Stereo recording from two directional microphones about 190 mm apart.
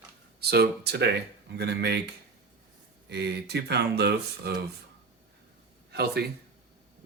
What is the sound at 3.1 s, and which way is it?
Speech, 60° right (ahead or behind).